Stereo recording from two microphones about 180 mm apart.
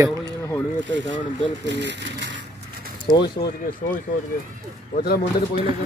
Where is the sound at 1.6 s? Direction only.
75° right (ahead or behind).